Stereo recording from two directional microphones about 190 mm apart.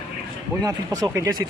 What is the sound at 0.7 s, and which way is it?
Speech, 15° right (ahead or behind).